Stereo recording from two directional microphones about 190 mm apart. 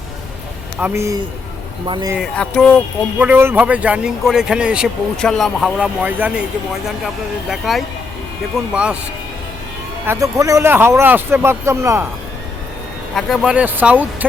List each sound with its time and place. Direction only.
0.8 s speech: 10° right (ahead or behind)
2.1 s a man's voice: centre (ahead or behind)
3.2 s a man's voice: 10° right (ahead or behind)
7.5 s a man's voice: centre (ahead or behind)
10.1 s speech: 15° right (ahead or behind)
13.1 s a man's voice: centre (ahead or behind)